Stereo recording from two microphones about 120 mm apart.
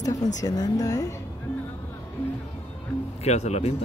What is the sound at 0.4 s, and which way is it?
Speech, 30° left (ahead or behind).